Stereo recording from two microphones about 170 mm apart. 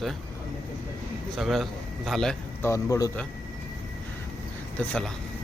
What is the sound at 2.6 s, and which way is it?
Speech, 15° left (ahead or behind).